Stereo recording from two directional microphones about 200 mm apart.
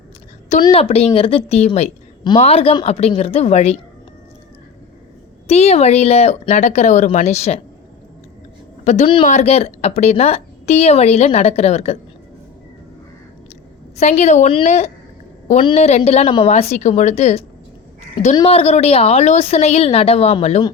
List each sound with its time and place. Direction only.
0.6 s a woman's voice: 30° left (ahead or behind)
5.5 s a woman's voice: 30° left (ahead or behind)
8.8 s a woman's voice: 35° left (ahead or behind)
14.0 s a woman's voice: 35° left (ahead or behind)